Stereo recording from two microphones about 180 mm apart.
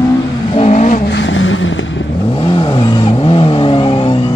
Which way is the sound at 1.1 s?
85° left.